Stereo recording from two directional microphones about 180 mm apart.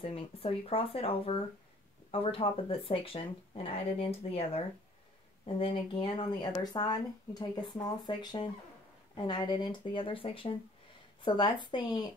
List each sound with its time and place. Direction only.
0.0 s speech: 30° left (ahead or behind)